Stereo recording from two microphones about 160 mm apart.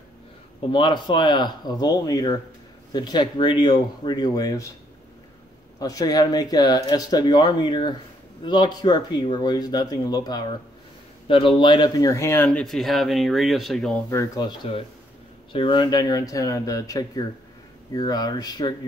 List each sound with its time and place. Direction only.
0.7 s speech: 30° left (ahead or behind)
5.8 s speech: 25° left (ahead or behind)
12.4 s speech: 5° left (ahead or behind)
14.1 s speech: 20° left (ahead or behind)